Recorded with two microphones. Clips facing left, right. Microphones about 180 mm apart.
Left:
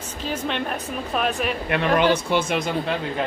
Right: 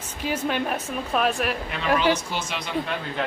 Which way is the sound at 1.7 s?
60° left (ahead or behind).